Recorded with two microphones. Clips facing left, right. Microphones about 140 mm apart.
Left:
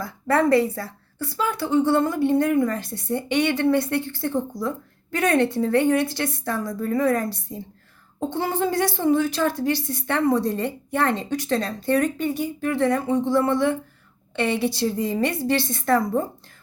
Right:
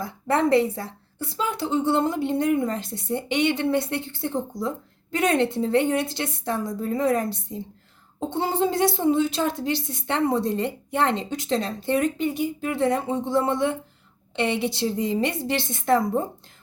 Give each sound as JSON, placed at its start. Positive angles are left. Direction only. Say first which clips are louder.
{"t": 0.0, "sound": "a woman's voice", "louder": "left 2 dB", "side_deg": -20}